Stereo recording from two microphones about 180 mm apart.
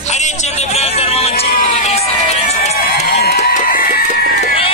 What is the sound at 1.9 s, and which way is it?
Run, 35° left (ahead or behind).